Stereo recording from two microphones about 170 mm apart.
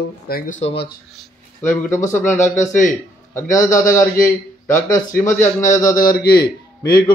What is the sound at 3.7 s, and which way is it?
Speech, 15° left (ahead or behind).